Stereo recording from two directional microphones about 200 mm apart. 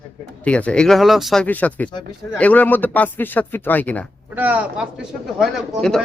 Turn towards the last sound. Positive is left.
turn(degrees=0)  # may be behind; listen again after turning